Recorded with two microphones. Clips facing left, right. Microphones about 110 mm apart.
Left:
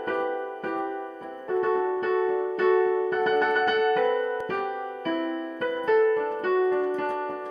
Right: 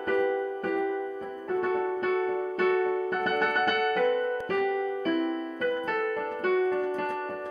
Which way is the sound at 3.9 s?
35° left (ahead or behind).